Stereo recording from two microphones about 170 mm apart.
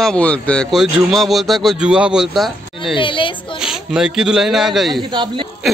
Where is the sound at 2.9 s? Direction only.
30° left (ahead or behind).